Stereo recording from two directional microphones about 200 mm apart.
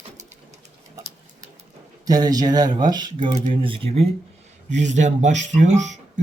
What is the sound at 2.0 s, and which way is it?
Speech, 20° right (ahead or behind).